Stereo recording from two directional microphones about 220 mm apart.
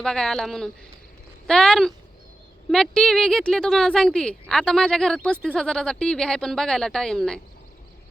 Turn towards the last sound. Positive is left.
turn(degrees=5)  # may be behind; listen again after turning